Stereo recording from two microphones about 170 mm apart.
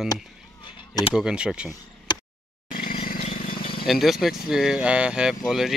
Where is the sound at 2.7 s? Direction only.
55° left (ahead or behind).